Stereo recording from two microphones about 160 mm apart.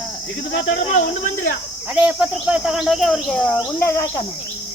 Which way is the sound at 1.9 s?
5° right (ahead or behind).